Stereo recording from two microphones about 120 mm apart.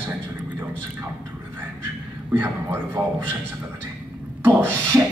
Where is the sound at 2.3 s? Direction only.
15° right (ahead or behind).